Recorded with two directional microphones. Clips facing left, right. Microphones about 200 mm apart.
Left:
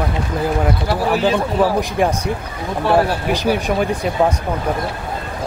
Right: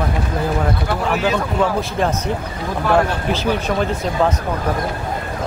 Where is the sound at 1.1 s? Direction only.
30° left (ahead or behind).